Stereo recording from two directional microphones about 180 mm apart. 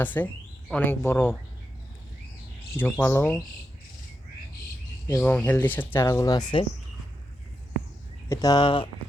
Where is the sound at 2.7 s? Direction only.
10° left (ahead or behind).